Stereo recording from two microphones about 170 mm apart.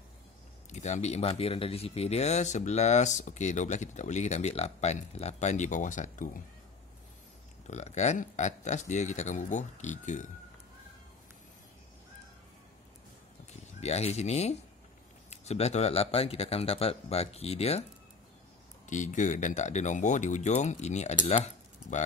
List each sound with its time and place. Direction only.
0.7 s speech: 45° left (ahead or behind)
7.6 s speech: 45° left (ahead or behind)
13.7 s speech: 40° left (ahead or behind)
18.9 s speech: 45° left (ahead or behind)